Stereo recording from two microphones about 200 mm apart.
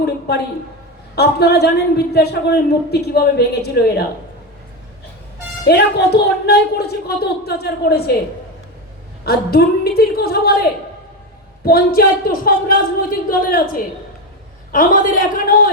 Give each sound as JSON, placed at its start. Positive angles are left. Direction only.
{"t": 0.0, "sound": "a woman's voice", "side_deg": 55}
{"t": 5.6, "sound": "a woman's voice", "side_deg": 55}
{"t": 9.2, "sound": "a woman's voice", "side_deg": 50}